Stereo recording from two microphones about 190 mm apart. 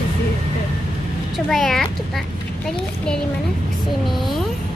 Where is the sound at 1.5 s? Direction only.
Centre (ahead or behind).